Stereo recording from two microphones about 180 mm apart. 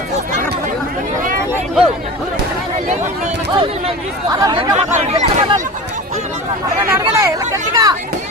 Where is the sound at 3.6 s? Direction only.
25° right (ahead or behind).